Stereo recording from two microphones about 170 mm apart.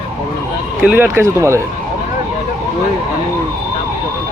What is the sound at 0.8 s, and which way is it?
Speech, 10° right (ahead or behind).